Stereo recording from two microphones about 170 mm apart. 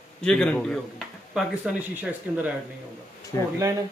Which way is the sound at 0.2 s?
5° left (ahead or behind).